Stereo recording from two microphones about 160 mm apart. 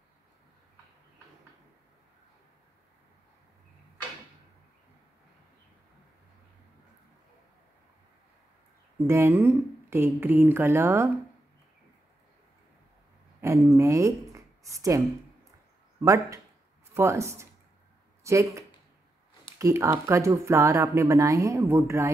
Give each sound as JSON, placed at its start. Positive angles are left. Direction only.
{"t": 9.0, "sound": "speech", "side_deg": -15}
{"t": 13.4, "sound": "speech", "side_deg": -20}
{"t": 19.6, "sound": "speech", "side_deg": -20}